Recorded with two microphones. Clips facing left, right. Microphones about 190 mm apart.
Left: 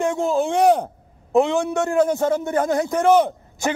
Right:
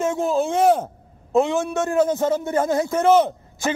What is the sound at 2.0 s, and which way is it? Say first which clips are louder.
Speech: left 1 dB; 20° right (ahead or behind).